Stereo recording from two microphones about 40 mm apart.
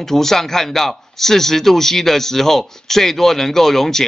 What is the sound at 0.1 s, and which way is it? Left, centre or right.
A man's voice, centre.